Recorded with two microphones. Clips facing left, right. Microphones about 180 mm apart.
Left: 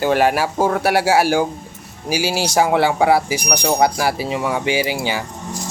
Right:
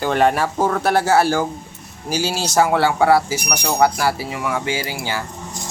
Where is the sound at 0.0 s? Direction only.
5° left (ahead or behind).